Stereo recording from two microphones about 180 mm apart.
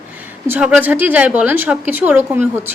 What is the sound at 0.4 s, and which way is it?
A woman's voice, 10° right (ahead or behind).